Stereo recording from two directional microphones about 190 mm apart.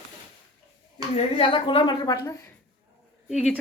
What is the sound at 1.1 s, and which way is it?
Speech, 30° left (ahead or behind).